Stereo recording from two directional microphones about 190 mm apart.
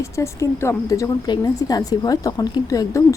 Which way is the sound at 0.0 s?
15° left (ahead or behind).